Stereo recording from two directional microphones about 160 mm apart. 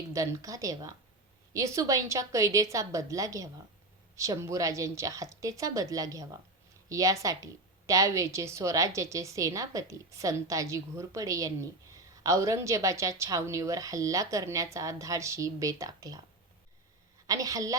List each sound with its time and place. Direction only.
0.1 s a woman's voice: 20° right (ahead or behind)
17.2 s a woman's voice: 20° right (ahead or behind)